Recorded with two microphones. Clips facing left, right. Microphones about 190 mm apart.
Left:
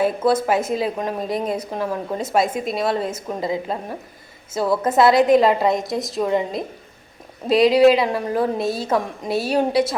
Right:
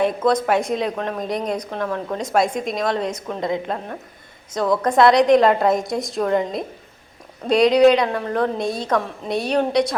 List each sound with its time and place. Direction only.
0.3 s speech: 5° left (ahead or behind)